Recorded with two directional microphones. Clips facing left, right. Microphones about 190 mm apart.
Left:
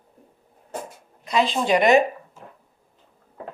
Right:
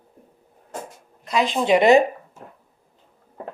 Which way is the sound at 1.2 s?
5° right (ahead or behind).